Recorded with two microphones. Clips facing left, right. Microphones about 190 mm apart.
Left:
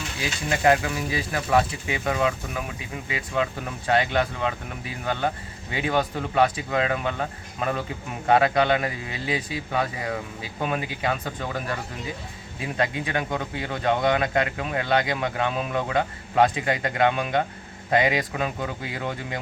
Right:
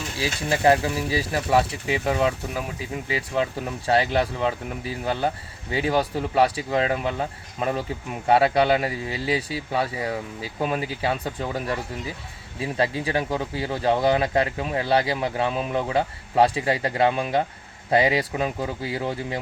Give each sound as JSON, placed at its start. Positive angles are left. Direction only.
{"t": 0.2, "sound": "speech", "side_deg": -30}